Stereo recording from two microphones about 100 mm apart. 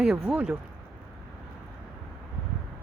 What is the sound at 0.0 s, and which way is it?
Speech, 5° right (ahead or behind).